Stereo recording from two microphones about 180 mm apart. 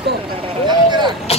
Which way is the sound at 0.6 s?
25° right (ahead or behind).